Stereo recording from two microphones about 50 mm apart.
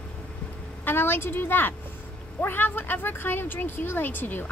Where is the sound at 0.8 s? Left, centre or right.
Left.